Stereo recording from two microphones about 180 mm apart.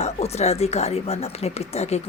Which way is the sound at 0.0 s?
35° left (ahead or behind).